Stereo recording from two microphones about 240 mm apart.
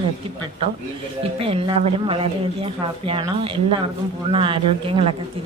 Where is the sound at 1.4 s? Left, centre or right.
Right.